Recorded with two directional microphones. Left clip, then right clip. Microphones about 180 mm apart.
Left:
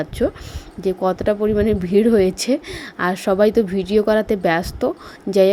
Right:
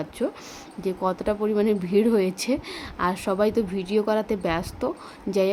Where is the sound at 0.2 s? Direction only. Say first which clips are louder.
Left 7 dB; 25° left (ahead or behind).